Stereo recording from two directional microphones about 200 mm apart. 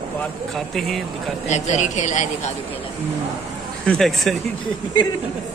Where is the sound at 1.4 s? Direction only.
35° left (ahead or behind).